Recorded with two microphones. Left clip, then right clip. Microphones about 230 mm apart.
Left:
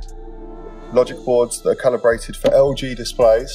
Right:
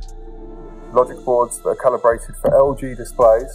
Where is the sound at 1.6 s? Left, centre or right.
Left.